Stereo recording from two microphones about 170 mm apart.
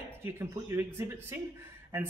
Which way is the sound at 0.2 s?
15° right (ahead or behind).